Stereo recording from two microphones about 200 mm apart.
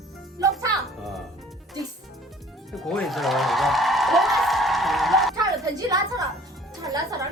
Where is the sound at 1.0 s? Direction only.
Centre (ahead or behind).